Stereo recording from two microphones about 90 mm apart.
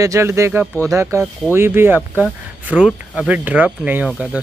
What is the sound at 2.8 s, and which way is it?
Speech, 5° right (ahead or behind).